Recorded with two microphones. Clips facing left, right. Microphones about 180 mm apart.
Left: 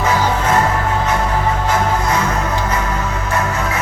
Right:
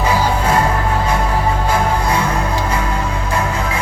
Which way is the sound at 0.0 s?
10° right (ahead or behind).